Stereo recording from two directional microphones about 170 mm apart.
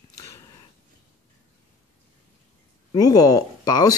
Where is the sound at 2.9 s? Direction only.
20° left (ahead or behind).